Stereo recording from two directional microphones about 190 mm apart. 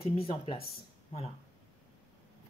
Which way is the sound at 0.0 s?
30° left (ahead or behind).